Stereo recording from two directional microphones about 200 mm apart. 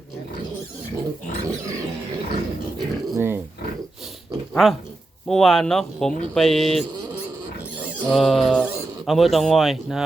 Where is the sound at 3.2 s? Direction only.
10° right (ahead or behind).